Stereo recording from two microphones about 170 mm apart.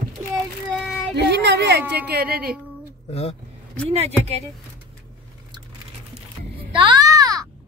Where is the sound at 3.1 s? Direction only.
35° left (ahead or behind).